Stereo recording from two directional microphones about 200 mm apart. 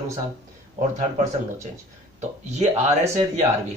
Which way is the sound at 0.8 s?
35° right (ahead or behind).